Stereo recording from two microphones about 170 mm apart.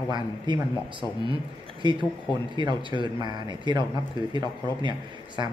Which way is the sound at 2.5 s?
25° right (ahead or behind).